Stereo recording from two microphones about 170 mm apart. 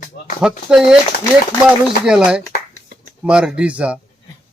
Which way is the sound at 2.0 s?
5° right (ahead or behind).